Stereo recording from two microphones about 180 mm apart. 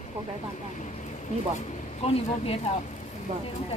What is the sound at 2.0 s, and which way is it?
Speech, 35° left (ahead or behind).